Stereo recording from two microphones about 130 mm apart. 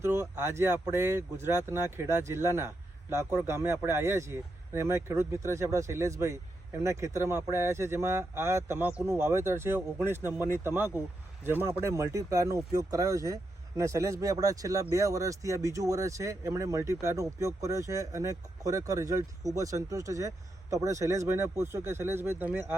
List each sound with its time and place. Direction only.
0.0 s speech: 20° right (ahead or behind)